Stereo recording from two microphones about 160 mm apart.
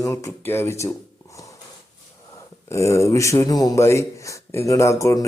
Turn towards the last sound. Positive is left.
turn(degrees=20)  # may be behind; listen again after turning